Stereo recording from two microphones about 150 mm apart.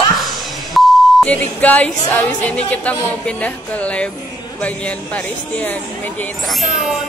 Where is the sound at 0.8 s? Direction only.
5° left (ahead or behind).